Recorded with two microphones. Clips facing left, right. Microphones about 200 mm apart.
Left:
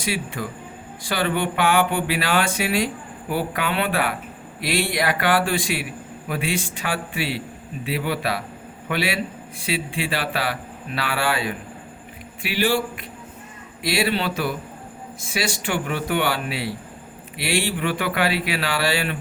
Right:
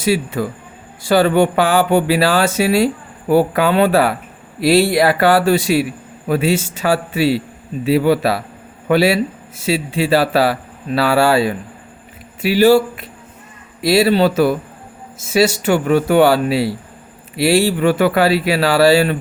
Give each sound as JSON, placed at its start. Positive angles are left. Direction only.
{"t": 0.0, "sound": "a man's voice", "side_deg": -40}